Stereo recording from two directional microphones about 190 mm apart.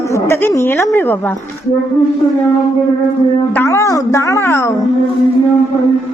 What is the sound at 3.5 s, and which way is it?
A woman's voice, 15° left (ahead or behind).